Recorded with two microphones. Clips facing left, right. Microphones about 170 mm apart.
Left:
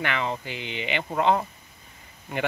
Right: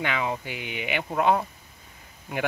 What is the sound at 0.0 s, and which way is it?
Speech, 10° right (ahead or behind).